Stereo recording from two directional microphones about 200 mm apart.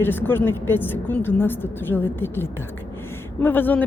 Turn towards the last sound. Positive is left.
turn(degrees=10)  # may be behind; listen again after turning